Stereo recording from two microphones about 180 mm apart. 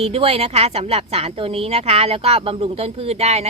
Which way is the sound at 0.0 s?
35° right (ahead or behind).